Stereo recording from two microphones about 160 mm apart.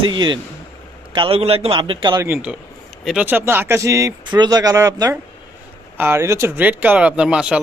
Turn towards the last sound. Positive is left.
turn(degrees=-5)  # may be behind; listen again after turning